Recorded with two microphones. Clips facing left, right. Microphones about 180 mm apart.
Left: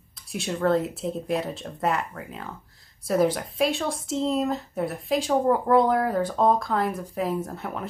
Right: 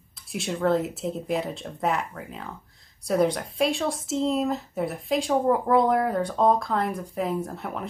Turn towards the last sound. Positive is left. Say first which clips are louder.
# even
turn(degrees=0)  # may be behind; listen again after turning